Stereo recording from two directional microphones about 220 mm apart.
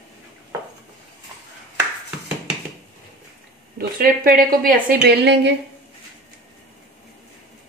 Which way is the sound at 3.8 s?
40° right (ahead or behind).